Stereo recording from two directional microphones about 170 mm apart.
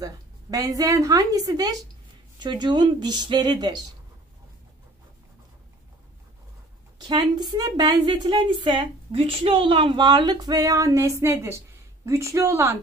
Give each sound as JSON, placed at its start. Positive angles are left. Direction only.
{"t": 0.0, "sound": "a woman's voice", "side_deg": -20}
{"t": 7.0, "sound": "a woman's voice", "side_deg": -25}